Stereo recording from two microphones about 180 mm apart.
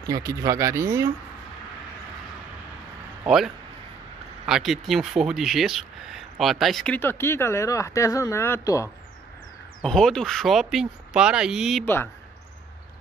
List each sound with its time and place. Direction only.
0.0 s speech: 20° right (ahead or behind)
3.3 s speech: centre (ahead or behind)
7.0 s speech: 15° left (ahead or behind)
9.8 s speech: 5° left (ahead or behind)
11.8 s speech: 10° left (ahead or behind)